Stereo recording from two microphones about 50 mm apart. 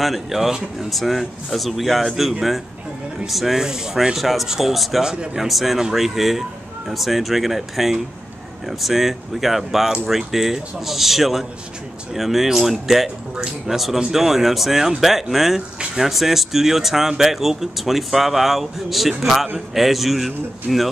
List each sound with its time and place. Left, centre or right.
0.0 s speech: centre
5.0 s speech: centre
5.4 s speech: centre